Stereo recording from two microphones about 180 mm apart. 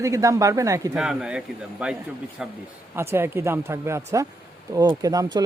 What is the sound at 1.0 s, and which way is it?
Speech, 5° right (ahead or behind).